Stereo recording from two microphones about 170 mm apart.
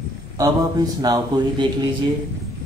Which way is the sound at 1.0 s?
25° right (ahead or behind).